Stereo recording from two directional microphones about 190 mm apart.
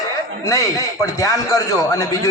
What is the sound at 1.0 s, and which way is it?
Speech, 15° left (ahead or behind).